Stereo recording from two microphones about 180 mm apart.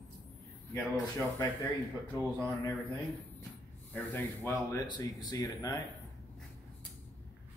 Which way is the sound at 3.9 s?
10° left (ahead or behind).